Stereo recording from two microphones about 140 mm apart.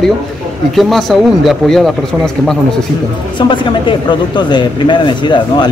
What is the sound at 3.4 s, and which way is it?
Speech, 35° left (ahead or behind).